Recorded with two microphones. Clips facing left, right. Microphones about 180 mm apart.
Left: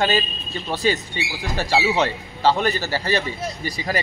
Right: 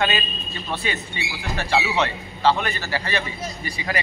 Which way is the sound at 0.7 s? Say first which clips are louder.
Left 7 dB; 35° left (ahead or behind).